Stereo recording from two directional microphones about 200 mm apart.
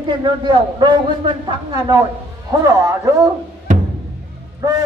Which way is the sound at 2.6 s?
15° right (ahead or behind).